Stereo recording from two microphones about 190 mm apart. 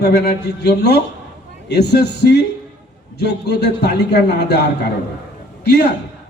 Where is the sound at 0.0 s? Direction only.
60° left (ahead or behind).